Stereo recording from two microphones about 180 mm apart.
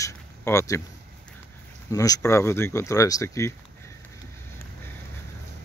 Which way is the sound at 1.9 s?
20° left (ahead or behind).